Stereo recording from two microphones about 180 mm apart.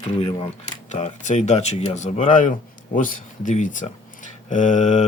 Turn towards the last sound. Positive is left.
turn(degrees=40)  # may be behind; listen again after turning